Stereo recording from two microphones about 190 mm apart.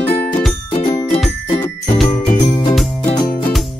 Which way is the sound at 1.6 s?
15° left (ahead or behind).